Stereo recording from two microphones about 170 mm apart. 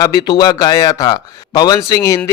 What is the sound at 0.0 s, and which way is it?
A man's voice, 20° left (ahead or behind).